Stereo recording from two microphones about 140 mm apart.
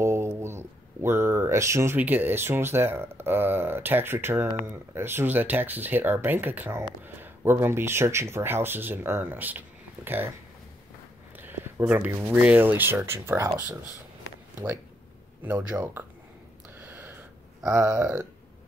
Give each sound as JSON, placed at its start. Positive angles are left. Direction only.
{"t": 0.0, "sound": "speech", "side_deg": -20}
{"t": 11.3, "sound": "speech", "side_deg": -15}
{"t": 15.4, "sound": "speech", "side_deg": -15}
{"t": 16.7, "sound": "a sound", "side_deg": -15}
{"t": 17.6, "sound": "speech", "side_deg": -10}